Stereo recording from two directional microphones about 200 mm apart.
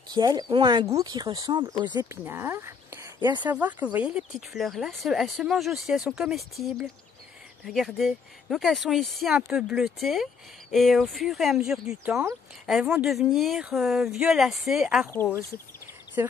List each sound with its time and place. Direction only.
0.1 s speech: 20° right (ahead or behind); by 15.0 s centre (ahead or behind)
15.0 s speech: 10° left (ahead or behind)
16.2 s speech: 15° right (ahead or behind)